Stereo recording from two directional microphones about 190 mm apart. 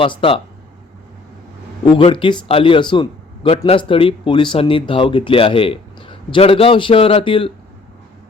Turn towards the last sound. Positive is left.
turn(degrees=30)  # may be behind; listen again after turning